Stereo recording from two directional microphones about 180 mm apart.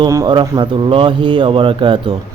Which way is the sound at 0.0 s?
20° right (ahead or behind).